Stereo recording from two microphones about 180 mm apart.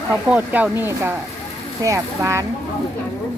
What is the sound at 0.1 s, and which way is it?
Speech, 10° right (ahead or behind).